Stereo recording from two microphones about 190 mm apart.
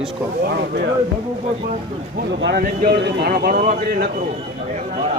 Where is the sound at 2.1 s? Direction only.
55° right (ahead or behind).